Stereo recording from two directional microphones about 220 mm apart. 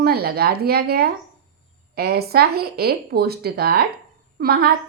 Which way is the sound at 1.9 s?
45° right (ahead or behind).